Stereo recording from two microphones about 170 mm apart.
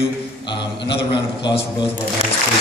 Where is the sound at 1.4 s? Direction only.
30° left (ahead or behind).